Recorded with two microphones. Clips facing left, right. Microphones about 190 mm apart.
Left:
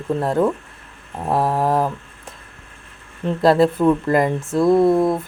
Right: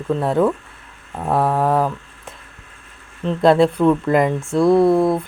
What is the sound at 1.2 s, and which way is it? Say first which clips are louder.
Mantra: right 1 dB; 10° left (ahead or behind).